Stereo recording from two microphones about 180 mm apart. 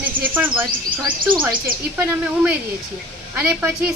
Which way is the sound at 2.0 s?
10° right (ahead or behind).